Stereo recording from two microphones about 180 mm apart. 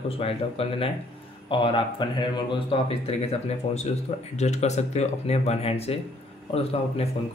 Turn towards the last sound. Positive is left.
turn(degrees=35)  # may be behind; listen again after turning